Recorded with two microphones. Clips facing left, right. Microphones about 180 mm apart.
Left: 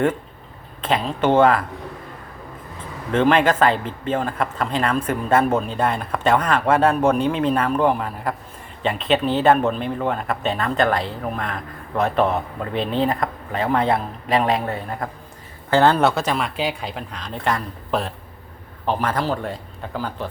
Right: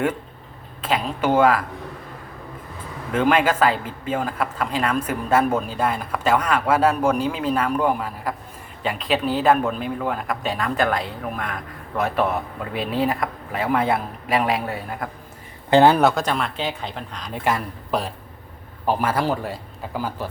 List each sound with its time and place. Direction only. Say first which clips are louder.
0.8 s speech: left 2 dB; 5° right (ahead or behind)
3.1 s speech: left 2 dB; 5° right (ahead or behind)
12.1 s a man's voice: left 3 dB; 25° left (ahead or behind)
12.7 s speech: left 2 dB; 5° right (ahead or behind)
16.0 s speech: even; centre (ahead or behind)